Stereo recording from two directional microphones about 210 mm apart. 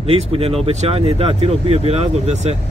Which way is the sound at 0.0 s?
25° right (ahead or behind).